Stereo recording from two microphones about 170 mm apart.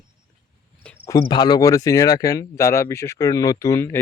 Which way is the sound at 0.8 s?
10° left (ahead or behind).